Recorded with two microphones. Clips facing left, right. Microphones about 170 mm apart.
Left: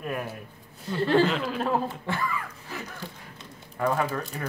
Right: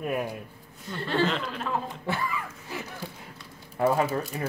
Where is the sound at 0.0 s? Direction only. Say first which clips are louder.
Right 3 dB; 15° right (ahead or behind).